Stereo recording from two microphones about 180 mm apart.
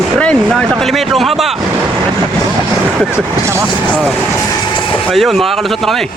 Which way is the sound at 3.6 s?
5° right (ahead or behind).